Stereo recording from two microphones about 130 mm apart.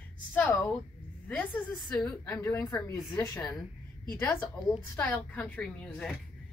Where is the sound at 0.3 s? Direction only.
10° left (ahead or behind).